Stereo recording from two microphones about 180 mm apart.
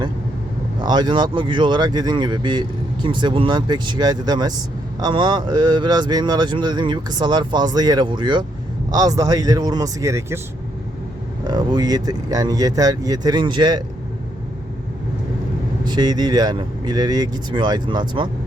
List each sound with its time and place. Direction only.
0.8 s speech: 25° right (ahead or behind)
11.4 s speech: 25° right (ahead or behind)
15.9 s speech: 25° right (ahead or behind)